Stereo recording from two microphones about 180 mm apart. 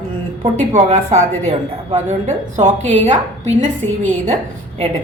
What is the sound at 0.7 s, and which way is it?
A woman's voice, 35° right (ahead or behind).